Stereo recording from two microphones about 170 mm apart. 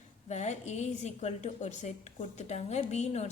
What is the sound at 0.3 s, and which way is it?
A woman's voice, 40° left (ahead or behind).